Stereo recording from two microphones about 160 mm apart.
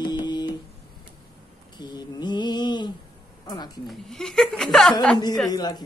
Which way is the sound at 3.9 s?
5° left (ahead or behind).